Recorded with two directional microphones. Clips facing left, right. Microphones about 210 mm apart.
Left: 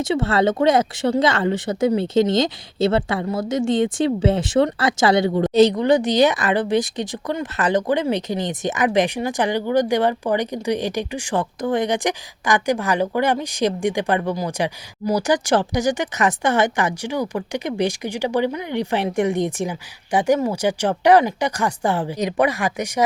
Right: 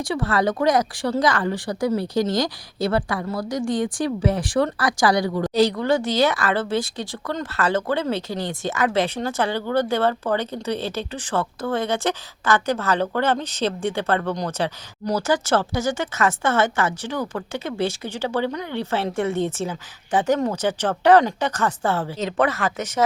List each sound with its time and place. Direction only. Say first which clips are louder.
0.0 s a woman's voice: left 3 dB; 25° left (ahead or behind)